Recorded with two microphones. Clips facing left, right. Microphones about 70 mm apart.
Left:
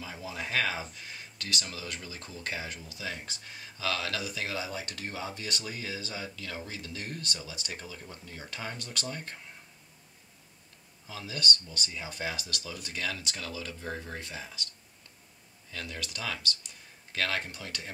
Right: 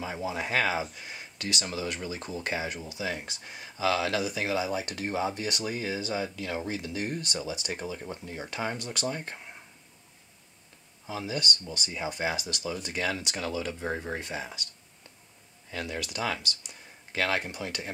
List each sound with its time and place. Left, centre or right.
0.0 s speech: right
11.1 s speech: right
15.7 s speech: centre